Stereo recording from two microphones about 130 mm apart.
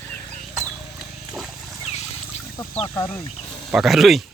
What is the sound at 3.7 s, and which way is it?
Speech, centre (ahead or behind).